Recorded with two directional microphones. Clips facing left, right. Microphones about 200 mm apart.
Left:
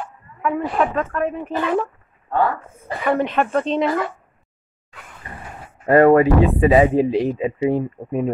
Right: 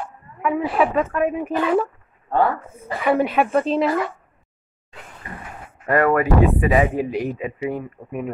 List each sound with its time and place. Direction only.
0.4 s speech: 5° right (ahead or behind)
2.9 s speech: 5° right (ahead or behind)
5.9 s speech: 30° left (ahead or behind)